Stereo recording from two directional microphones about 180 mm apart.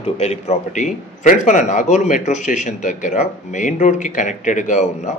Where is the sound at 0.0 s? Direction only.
35° left (ahead or behind).